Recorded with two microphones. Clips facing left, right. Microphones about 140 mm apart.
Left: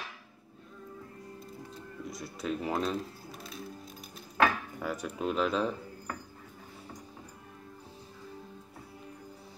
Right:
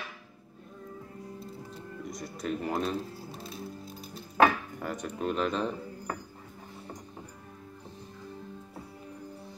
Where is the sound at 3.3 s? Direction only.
30° right (ahead or behind).